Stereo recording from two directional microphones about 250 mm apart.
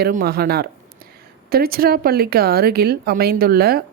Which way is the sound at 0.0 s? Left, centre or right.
Right.